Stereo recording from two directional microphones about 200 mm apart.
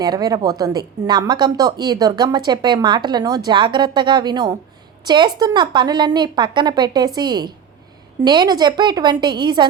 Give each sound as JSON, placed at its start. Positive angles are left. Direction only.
{"t": 0.0, "sound": "a woman's voice", "side_deg": -20}